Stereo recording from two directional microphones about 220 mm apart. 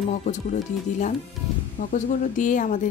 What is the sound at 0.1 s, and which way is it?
Speech, 30° left (ahead or behind).